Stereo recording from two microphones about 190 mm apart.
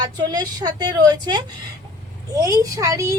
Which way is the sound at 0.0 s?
20° right (ahead or behind).